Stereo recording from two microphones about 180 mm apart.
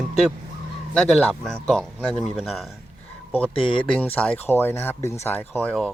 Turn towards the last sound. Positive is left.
turn(degrees=10)  # may be behind; listen again after turning